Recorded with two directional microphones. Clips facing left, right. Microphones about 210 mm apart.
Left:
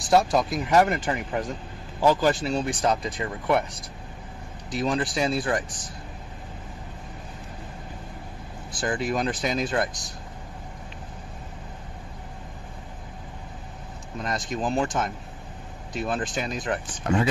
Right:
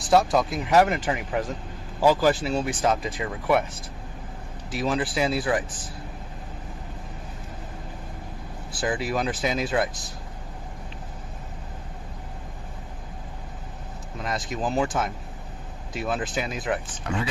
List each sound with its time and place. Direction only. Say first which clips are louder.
0.0 s speech: even; centre (ahead or behind)
4.6 s speech: even; 5° right (ahead or behind)
8.7 s speech: even; 5° right (ahead or behind)
14.2 s speech: even; 5° right (ahead or behind)
17.0 s speech: left 5 dB; 45° left (ahead or behind)